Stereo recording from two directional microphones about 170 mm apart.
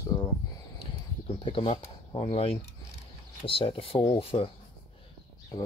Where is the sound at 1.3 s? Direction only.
30° left (ahead or behind).